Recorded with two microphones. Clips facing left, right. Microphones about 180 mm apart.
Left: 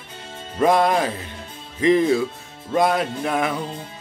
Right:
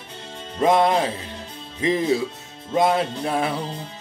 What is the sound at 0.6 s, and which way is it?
Music, 25° right (ahead or behind).